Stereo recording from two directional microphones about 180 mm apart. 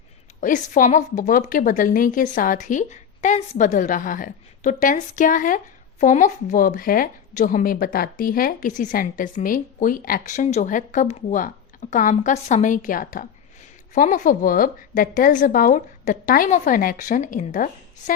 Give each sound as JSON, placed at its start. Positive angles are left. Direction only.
{"t": 0.4, "sound": "a woman's voice", "side_deg": 45}